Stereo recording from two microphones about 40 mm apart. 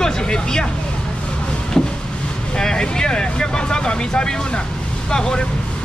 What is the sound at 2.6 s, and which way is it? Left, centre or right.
Speech, centre.